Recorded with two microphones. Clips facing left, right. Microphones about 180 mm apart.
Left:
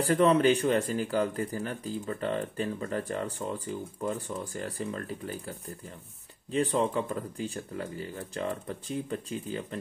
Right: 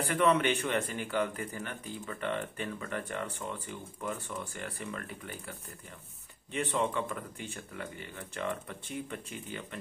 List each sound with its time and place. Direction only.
0.0 s speech: 35° left (ahead or behind)
6.5 s speech: 35° left (ahead or behind)